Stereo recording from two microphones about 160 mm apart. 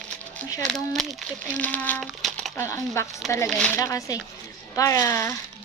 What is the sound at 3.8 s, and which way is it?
A woman's voice, 20° left (ahead or behind).